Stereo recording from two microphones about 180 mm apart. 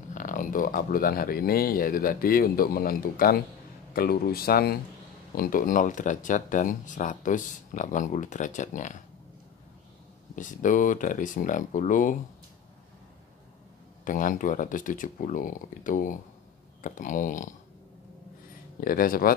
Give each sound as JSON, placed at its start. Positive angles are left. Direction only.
{"t": 0.1, "sound": "speech", "side_deg": 45}
{"t": 10.3, "sound": "speech", "side_deg": 45}
{"t": 14.0, "sound": "speech", "side_deg": 45}
{"t": 18.8, "sound": "speech", "side_deg": 55}